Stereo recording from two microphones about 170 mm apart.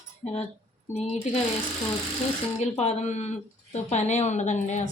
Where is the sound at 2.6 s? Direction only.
40° left (ahead or behind).